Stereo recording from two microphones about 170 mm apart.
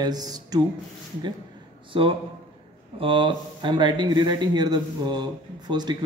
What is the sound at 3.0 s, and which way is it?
Speech, 30° right (ahead or behind).